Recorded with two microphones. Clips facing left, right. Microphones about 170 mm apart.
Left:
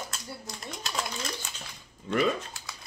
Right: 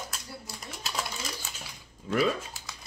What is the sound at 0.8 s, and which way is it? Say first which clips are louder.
Typewriter: left 1 dB; 5° right (ahead or behind).